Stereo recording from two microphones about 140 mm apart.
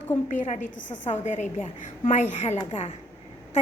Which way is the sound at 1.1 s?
55° left (ahead or behind).